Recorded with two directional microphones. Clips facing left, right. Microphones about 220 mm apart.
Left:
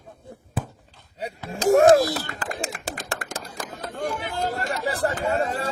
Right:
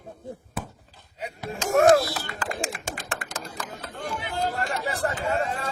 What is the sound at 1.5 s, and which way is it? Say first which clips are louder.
Speech: left 3 dB; 35° left (ahead or behind).